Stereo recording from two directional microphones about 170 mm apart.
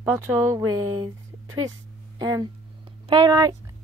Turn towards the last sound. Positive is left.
turn(degrees=-20)  # may be behind; listen again after turning